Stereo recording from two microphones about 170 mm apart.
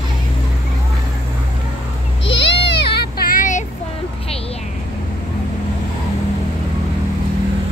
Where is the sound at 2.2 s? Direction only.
90° left; by 3.6 s 50° left (ahead or behind).